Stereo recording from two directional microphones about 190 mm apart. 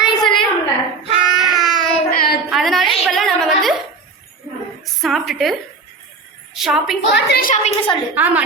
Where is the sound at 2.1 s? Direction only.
50° left (ahead or behind).